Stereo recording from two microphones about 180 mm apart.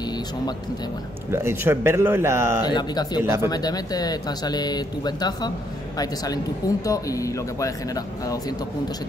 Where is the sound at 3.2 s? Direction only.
15° right (ahead or behind).